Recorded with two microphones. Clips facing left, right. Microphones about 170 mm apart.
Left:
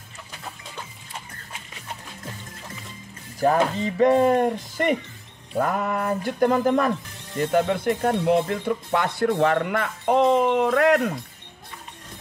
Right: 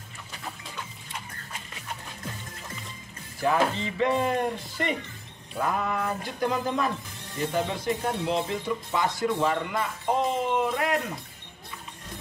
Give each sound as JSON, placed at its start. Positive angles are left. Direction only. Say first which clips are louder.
{"t": 3.3, "sound": "speech", "louder": "left 4 dB", "side_deg": 40}